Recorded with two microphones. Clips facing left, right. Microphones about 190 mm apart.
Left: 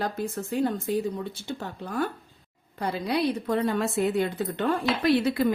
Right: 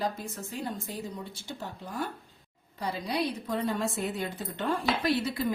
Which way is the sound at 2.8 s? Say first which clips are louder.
Left 5 dB; 60° left (ahead or behind).